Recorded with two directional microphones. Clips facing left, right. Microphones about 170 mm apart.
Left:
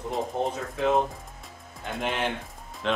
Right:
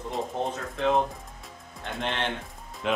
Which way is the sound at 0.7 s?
5° left (ahead or behind).